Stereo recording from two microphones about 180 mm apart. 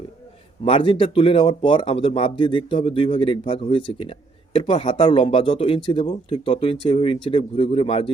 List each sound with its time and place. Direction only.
0.6 s speech: 30° left (ahead or behind)